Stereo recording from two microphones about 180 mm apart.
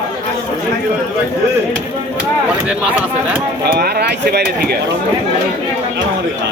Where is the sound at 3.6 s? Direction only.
65° right (ahead or behind).